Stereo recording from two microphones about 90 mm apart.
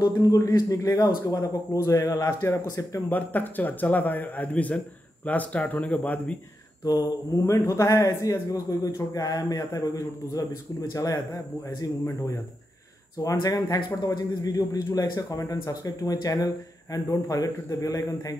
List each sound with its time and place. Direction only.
0.0 s a man's voice: 45° left (ahead or behind)
3.1 s a man's voice: 20° left (ahead or behind)
6.8 s a man's voice: 45° left (ahead or behind)
13.2 s a man's voice: 40° left (ahead or behind)